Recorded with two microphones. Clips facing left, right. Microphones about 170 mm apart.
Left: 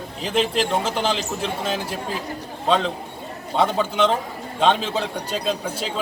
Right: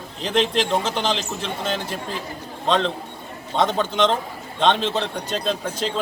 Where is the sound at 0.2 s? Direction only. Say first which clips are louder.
Right 1 dB; 5° left (ahead or behind).